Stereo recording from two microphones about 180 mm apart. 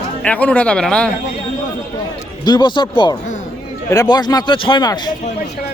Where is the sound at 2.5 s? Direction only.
25° left (ahead or behind).